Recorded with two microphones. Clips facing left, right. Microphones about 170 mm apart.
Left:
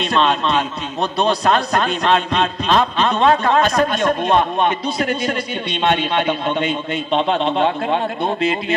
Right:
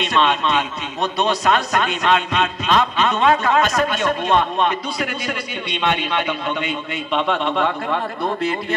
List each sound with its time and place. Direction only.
0.0 s a man's voice: 35° left (ahead or behind)
4.2 s a man's voice: 45° left (ahead or behind)
5.8 s a man's voice: 30° left (ahead or behind)